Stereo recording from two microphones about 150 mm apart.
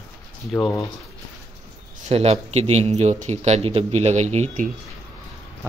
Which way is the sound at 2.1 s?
45° right (ahead or behind).